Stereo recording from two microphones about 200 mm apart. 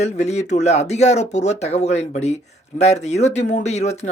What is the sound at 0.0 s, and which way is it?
Speech, 35° left (ahead or behind).